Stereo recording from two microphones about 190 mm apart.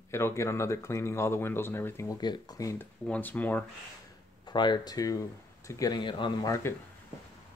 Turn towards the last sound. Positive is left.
turn(degrees=15)  # may be behind; listen again after turning